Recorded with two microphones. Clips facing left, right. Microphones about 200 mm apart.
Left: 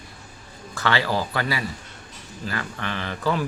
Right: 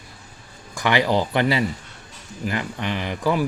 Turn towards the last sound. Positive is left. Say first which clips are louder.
# right 3 dB
turn(degrees=-10)  # may be behind; listen again after turning